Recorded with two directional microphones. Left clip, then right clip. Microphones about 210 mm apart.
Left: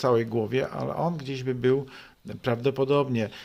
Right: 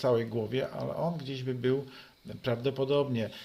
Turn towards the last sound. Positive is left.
turn(degrees=40)  # may be behind; listen again after turning